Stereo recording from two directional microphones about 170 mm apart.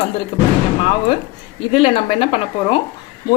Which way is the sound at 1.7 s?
35° left (ahead or behind).